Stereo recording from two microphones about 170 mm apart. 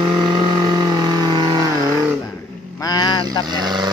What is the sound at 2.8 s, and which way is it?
Vehicle, 25° left (ahead or behind).